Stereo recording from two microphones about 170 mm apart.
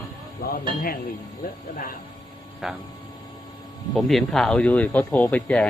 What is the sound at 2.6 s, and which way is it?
Speech, 5° right (ahead or behind).